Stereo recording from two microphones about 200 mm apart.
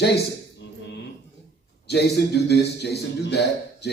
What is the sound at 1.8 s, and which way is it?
A man's voice, 55° left (ahead or behind).